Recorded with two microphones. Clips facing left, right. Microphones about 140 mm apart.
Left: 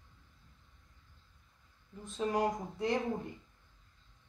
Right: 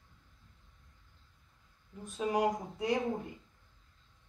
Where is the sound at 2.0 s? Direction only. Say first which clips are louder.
Right 1 dB; 15° right (ahead or behind).